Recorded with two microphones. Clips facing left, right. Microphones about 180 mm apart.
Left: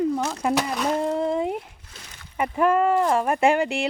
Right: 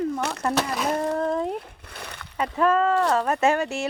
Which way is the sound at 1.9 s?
65° right (ahead or behind).